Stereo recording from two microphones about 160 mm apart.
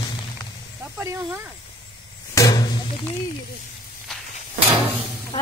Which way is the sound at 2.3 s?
20° left (ahead or behind).